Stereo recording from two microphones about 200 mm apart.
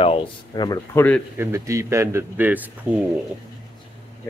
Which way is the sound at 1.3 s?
15° right (ahead or behind).